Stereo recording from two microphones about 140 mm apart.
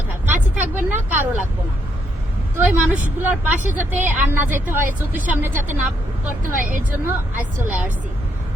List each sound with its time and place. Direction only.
0.3 s vehicle: 15° right (ahead or behind)
2.6 s a woman's voice: 10° right (ahead or behind)
7.0 s a woman's voice: 15° right (ahead or behind)